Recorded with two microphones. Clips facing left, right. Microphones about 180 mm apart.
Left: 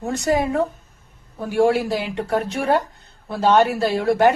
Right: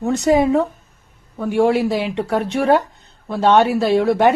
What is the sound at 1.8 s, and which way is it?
Speech, 60° right (ahead or behind).